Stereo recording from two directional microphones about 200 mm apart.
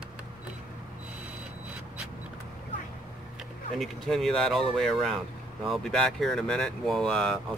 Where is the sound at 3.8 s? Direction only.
Centre (ahead or behind).